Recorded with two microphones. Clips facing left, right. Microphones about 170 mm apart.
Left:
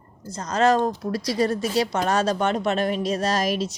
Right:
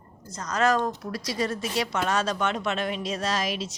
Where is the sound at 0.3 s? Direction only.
30° left (ahead or behind).